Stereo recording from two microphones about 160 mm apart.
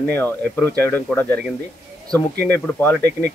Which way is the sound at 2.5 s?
15° left (ahead or behind).